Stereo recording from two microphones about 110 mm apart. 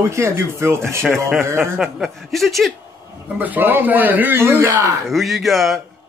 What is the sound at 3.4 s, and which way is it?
A man's voice, 15° right (ahead or behind).